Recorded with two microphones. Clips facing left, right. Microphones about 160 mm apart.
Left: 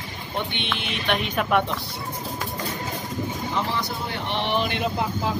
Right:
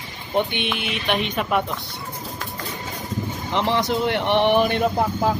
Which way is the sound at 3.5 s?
80° right.